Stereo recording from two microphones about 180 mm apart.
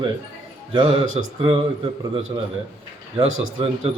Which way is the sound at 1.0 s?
90° right.